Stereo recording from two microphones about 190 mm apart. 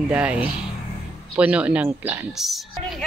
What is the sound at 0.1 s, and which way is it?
A woman's voice, 5° right (ahead or behind).